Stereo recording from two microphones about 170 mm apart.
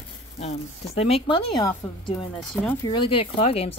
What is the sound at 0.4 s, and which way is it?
Speech, 40° left (ahead or behind).